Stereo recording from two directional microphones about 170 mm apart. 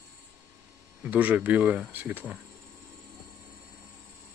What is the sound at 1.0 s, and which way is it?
Speech, 10° right (ahead or behind).